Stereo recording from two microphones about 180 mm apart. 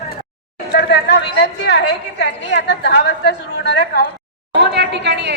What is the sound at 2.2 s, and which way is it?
A woman's voice, 70° left (ahead or behind).